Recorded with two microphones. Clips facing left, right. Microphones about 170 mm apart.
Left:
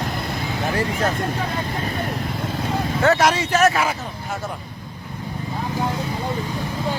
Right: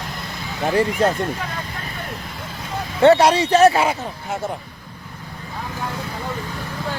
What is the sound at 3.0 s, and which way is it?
Speech, 30° right (ahead or behind).